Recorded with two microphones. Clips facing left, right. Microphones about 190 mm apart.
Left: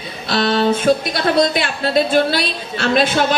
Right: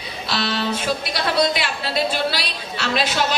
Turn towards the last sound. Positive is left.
turn(degrees=50)  # may be behind; listen again after turning